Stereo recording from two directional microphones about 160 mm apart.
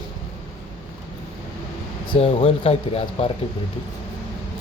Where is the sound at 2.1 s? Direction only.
40° left (ahead or behind).